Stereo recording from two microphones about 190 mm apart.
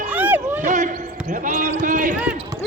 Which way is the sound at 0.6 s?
40° right (ahead or behind).